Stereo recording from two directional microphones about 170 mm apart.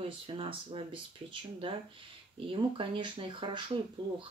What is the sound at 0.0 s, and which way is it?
Speech, 30° right (ahead or behind).